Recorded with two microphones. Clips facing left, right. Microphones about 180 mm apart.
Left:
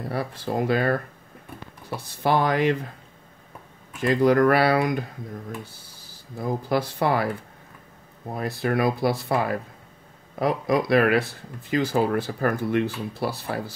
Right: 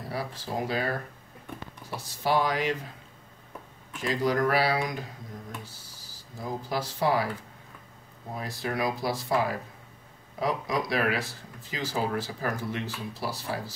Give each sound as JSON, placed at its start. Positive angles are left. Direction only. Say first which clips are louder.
{"t": 0.1, "sound": "speech", "louder": "left 5 dB", "side_deg": 60}
{"t": 2.0, "sound": "speech", "louder": "left 4 dB", "side_deg": 55}
{"t": 4.0, "sound": "speech", "louder": "left 8 dB", "side_deg": 55}
{"t": 8.4, "sound": "speech", "louder": "left 7 dB", "side_deg": 60}